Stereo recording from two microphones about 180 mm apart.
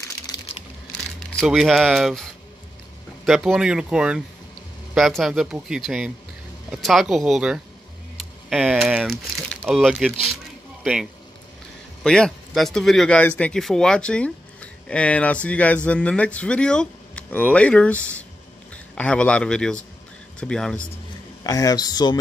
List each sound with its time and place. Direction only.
1.4 s speech: centre (ahead or behind)
3.3 s speech: centre (ahead or behind)
21.5 s speech: 20° left (ahead or behind)